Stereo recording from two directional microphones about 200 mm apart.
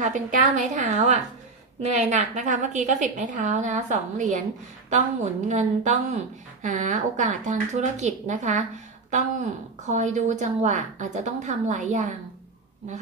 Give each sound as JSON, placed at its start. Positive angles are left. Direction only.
{"t": 0.0, "sound": "a woman's voice", "side_deg": -40}